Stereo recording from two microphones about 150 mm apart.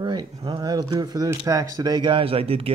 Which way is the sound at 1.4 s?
25° right (ahead or behind).